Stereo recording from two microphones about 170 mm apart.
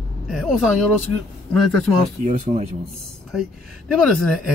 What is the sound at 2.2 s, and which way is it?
Speech, 45° right (ahead or behind).